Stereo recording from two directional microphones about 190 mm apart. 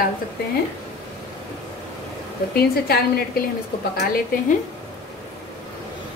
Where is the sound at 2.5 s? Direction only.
55° left (ahead or behind).